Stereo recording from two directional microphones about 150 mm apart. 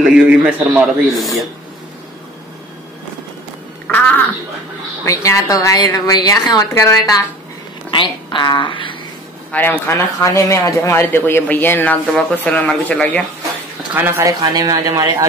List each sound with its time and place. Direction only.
0.0 s a man's voice: 5° right (ahead or behind)
3.8 s a sound: 10° left (ahead or behind)
5.0 s a woman's voice: 20° left (ahead or behind)
7.9 s a woman's voice: 35° left (ahead or behind)
9.5 s speech: 15° left (ahead or behind)
13.9 s speech: 15° right (ahead or behind)
14.4 s speech: 25° right (ahead or behind)